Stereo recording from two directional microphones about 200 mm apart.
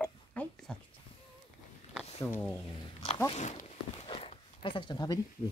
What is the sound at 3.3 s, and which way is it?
Walk, 35° left (ahead or behind).